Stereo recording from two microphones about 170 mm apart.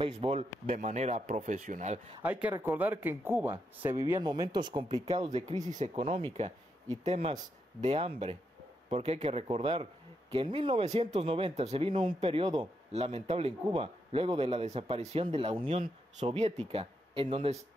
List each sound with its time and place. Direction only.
0.0 s a man's voice: 30° right (ahead or behind)
0.7 s speech: 50° right (ahead or behind)
2.5 s speech: 10° right (ahead or behind)
5.1 s a man's voice: 40° right (ahead or behind)
6.0 s a man's voice: 30° right (ahead or behind)